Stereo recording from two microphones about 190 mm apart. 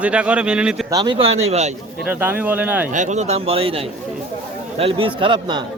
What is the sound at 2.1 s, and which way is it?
Speech, 10° right (ahead or behind).